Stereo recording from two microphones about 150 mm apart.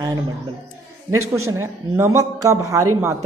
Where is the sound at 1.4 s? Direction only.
20° right (ahead or behind).